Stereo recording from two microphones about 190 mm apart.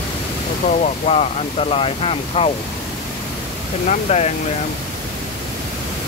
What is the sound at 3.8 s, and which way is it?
Speech, 35° left (ahead or behind).